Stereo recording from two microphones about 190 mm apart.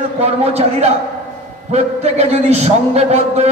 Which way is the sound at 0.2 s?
35° right (ahead or behind).